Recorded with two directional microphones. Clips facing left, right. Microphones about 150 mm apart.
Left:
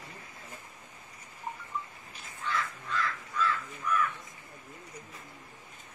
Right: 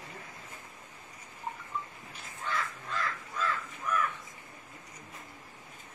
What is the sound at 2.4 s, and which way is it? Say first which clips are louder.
Crow: left 1 dB; 40° right (ahead or behind).